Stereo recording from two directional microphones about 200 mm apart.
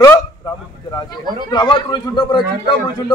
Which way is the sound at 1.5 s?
20° left (ahead or behind).